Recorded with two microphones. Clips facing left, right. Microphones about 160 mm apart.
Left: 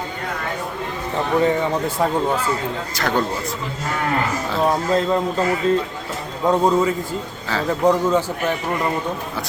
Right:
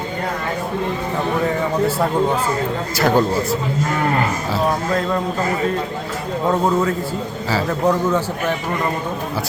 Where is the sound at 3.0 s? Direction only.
5° right (ahead or behind).